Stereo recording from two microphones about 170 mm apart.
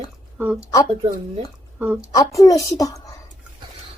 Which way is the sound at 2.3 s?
20° left (ahead or behind).